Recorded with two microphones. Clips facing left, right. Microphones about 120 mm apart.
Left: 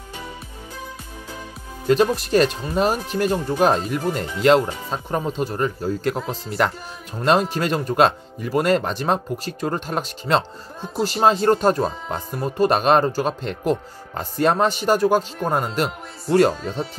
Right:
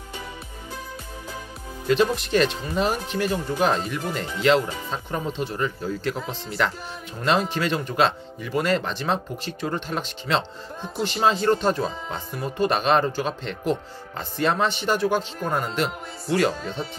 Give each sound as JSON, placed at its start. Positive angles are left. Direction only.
{"t": 1.9, "sound": "speech", "side_deg": 40}